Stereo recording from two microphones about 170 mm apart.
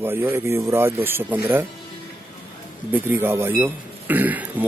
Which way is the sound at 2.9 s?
10° right (ahead or behind).